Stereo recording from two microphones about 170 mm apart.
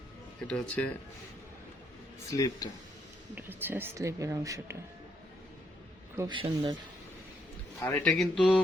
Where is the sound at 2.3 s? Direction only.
20° left (ahead or behind).